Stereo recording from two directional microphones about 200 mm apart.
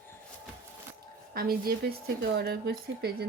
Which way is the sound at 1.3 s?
50° right (ahead or behind).